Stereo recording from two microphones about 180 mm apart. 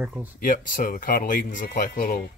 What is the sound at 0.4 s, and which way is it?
Speech, 50° left (ahead or behind).